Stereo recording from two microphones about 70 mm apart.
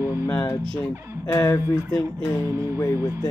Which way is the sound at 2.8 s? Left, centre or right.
Left.